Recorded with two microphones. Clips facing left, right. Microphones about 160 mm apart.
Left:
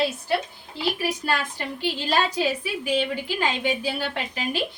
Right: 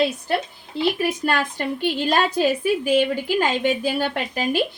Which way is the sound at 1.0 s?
50° right (ahead or behind).